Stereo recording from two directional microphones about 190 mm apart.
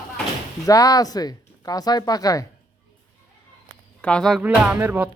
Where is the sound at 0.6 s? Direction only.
20° left (ahead or behind).